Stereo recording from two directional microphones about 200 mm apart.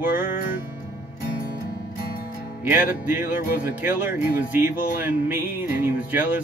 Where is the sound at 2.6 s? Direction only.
10° right (ahead or behind).